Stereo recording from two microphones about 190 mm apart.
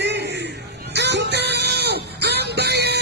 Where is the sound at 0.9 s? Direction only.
65° right (ahead or behind).